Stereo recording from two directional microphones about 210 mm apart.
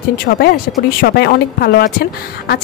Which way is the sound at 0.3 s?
50° left (ahead or behind).